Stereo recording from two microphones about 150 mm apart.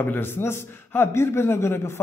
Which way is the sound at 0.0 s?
15° left (ahead or behind).